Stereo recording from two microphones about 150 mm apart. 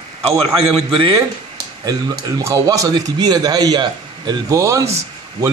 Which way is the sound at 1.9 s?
25° right (ahead or behind).